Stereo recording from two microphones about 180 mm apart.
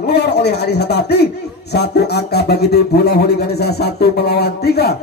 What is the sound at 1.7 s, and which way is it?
Speech, 65° left (ahead or behind).